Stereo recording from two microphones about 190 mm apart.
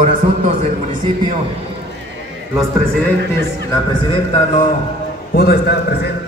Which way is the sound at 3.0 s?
15° left (ahead or behind).